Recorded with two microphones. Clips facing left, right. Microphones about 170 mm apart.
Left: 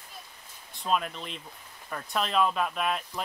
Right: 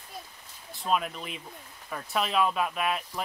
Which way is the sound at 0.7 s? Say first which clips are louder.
Even; 5° right (ahead or behind).